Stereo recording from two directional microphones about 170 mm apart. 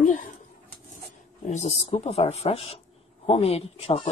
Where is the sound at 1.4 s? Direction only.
40° left (ahead or behind).